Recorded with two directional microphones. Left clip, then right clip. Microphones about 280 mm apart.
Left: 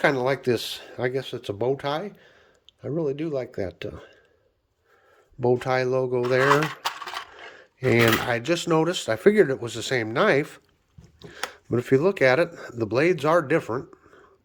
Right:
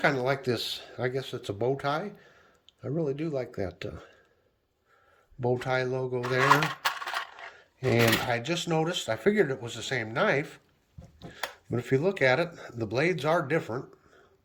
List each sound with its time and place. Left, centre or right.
0.0 s speech: centre
5.4 s speech: centre
6.8 s coin: centre
7.9 s speech: centre